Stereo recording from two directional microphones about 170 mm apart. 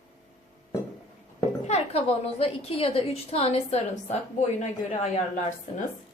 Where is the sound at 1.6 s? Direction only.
40° left (ahead or behind).